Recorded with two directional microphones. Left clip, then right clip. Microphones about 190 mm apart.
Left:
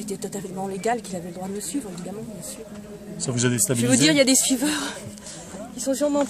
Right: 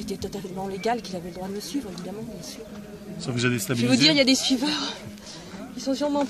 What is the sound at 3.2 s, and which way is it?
Speech, 35° left (ahead or behind).